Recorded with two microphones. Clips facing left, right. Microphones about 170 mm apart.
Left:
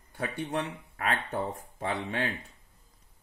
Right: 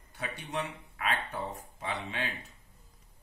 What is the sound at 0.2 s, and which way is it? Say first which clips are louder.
Speech: left 4 dB; 50° left (ahead or behind).